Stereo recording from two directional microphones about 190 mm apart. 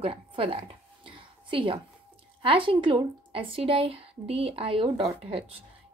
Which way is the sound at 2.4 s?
30° right (ahead or behind).